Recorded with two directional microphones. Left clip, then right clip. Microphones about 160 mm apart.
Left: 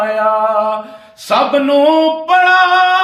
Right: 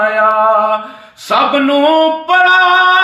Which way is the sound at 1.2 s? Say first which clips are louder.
Right 1 dB; 30° left (ahead or behind).